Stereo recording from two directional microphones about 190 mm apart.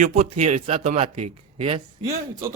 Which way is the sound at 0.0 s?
40° right (ahead or behind).